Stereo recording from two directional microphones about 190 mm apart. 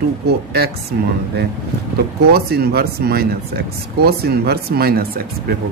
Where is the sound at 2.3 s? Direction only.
55° right (ahead or behind).